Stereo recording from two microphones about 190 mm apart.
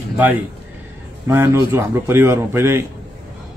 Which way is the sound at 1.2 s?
15° right (ahead or behind).